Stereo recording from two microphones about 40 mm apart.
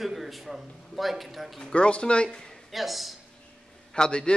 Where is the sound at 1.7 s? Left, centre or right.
Left.